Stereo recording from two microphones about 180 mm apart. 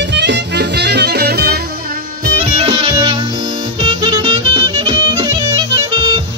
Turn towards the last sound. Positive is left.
turn(degrees=-20)  # may be behind; listen again after turning